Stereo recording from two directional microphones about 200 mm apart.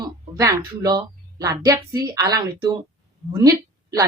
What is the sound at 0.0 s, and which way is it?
Speech, 20° right (ahead or behind).